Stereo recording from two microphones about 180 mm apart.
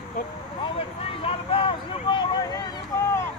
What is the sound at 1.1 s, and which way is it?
Speech, 30° left (ahead or behind).